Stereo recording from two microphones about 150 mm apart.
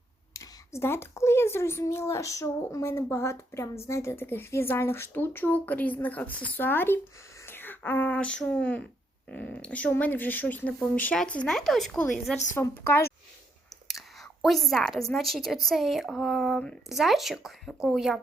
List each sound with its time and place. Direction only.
0.3 s speech: 20° left (ahead or behind)
14.4 s a woman's voice: centre (ahead or behind)